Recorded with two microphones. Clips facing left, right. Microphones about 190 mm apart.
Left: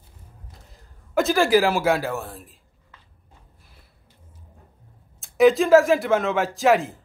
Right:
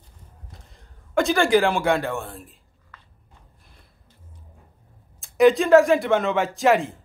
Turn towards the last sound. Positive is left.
turn(degrees=0)  # may be behind; listen again after turning